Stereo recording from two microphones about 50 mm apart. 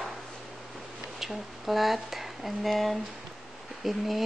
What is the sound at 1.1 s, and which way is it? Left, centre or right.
A woman's voice, centre.